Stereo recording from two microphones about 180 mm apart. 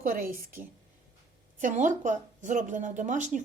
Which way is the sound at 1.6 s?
45° right (ahead or behind).